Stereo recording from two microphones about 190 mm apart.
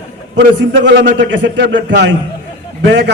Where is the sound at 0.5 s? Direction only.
70° right (ahead or behind).